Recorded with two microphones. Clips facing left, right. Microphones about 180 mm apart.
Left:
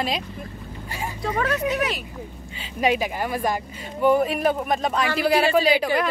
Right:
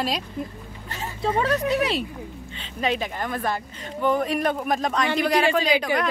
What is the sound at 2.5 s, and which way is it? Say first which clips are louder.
Speech: left 4 dB; 10° left (ahead or behind).